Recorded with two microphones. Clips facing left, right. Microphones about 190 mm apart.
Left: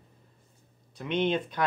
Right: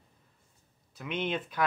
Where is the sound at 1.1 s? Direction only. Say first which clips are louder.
Left 6 dB; 5° right (ahead or behind).